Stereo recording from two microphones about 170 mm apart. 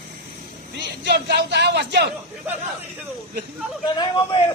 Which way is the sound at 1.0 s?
75° right (ahead or behind).